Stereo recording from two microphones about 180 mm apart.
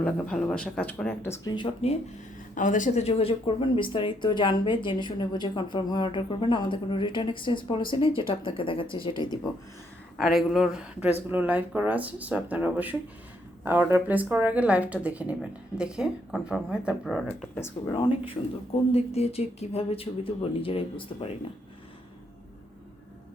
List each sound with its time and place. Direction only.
0.0 s speech: 5° left (ahead or behind)
1.5 s speech: 35° left (ahead or behind)
2.6 s speech: 45° left (ahead or behind); by 9.5 s 25° left (ahead or behind)
10.2 s a woman's voice: centre (ahead or behind)
17.2 s speech: 10° left (ahead or behind)
17.9 s speech: 30° left (ahead or behind)